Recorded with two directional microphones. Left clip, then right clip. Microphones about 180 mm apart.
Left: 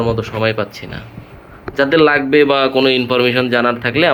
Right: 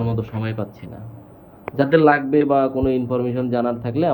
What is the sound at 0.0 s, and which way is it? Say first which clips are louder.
Speech: left 9 dB; 5° right (ahead or behind).